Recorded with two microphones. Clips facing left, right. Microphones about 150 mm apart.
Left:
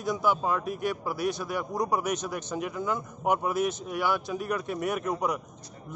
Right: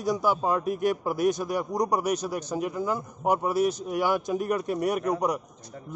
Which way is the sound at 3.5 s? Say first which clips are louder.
Right 4 dB; 35° right (ahead or behind).